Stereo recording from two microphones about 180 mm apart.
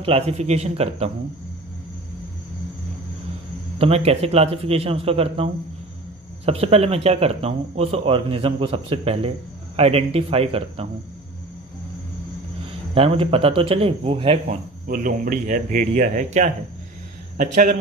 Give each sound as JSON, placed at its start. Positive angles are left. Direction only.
{"t": 0.0, "sound": "speech", "side_deg": -35}
{"t": 3.7, "sound": "speech", "side_deg": -35}
{"t": 12.9, "sound": "speech", "side_deg": -35}
{"t": 14.9, "sound": "speech", "side_deg": -50}